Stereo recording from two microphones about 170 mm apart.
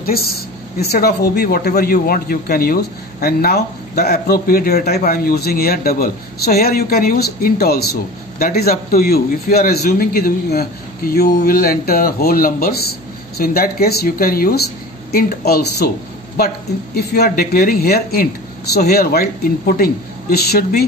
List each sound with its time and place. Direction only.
0.0 s a man's voice: 65° left (ahead or behind)